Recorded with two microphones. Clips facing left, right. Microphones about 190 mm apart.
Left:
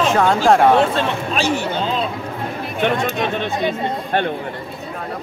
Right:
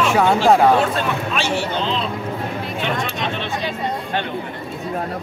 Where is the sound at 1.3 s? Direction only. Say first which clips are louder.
Left 4 dB; 45° left (ahead or behind).